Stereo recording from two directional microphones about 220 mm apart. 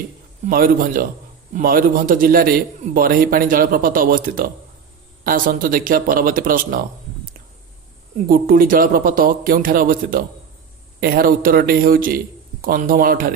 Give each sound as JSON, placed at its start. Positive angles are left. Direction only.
{"t": 0.5, "sound": "a man's voice", "side_deg": -40}
{"t": 8.3, "sound": "a man's voice", "side_deg": -40}